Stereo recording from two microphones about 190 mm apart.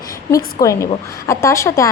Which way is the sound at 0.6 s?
15° left (ahead or behind).